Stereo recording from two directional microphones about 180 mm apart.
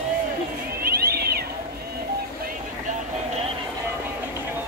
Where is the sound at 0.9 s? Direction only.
55° right (ahead or behind).